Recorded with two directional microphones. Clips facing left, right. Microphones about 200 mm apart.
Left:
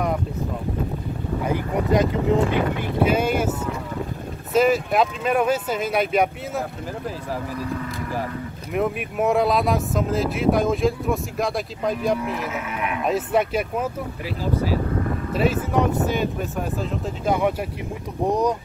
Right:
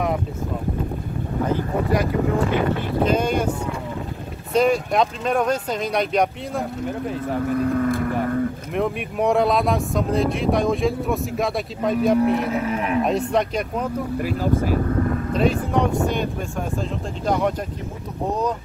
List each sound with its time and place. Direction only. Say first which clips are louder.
1.4 s speech: right 2 dB; 15° left (ahead or behind)
3.0 s speech: left 1 dB; 5° left (ahead or behind)
4.6 s speech: even; 5° left (ahead or behind)
7.4 s speech: right 8 dB; 55° right (ahead or behind)
8.7 s speech: left 2 dB; 5° left (ahead or behind)
12.2 s speech: right 8 dB; 35° right (ahead or behind)
13.0 s speech: left 4 dB; 5° left (ahead or behind)
14.2 s speech: right 2 dB; 50° right (ahead or behind)
15.3 s speech: even; 5° left (ahead or behind)